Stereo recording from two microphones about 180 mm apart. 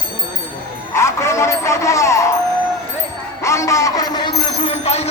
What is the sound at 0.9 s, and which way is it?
Speech, 15° left (ahead or behind).